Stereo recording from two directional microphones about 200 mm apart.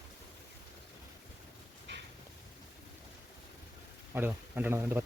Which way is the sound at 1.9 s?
60° right (ahead or behind).